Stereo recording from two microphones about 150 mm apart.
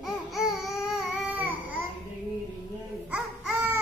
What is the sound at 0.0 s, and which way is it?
Babbling, centre (ahead or behind).